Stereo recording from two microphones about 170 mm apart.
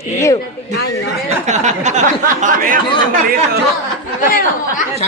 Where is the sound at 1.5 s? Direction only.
45° right (ahead or behind).